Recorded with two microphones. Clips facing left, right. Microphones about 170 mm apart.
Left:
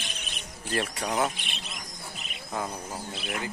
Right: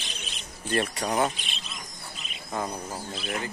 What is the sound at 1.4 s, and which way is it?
Speech, 60° left (ahead or behind).